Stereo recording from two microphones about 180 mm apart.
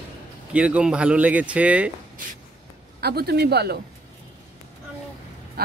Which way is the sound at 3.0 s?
60° right (ahead or behind).